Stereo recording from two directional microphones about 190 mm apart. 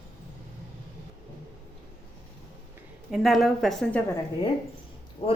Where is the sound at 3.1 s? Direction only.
Centre (ahead or behind).